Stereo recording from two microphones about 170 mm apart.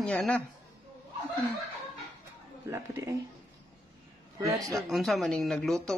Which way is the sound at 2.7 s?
15° right (ahead or behind).